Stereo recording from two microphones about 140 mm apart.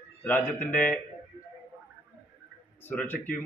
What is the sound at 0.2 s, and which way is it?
Speech, 15° left (ahead or behind).